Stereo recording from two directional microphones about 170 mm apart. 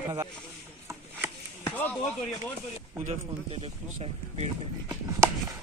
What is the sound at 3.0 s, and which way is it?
Speech, 35° right (ahead or behind).